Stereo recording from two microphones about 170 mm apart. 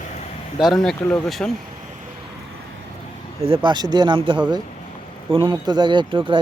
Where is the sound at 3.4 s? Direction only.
30° right (ahead or behind).